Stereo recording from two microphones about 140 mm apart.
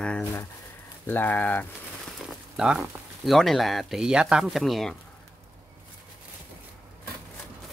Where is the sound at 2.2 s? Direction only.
Centre (ahead or behind).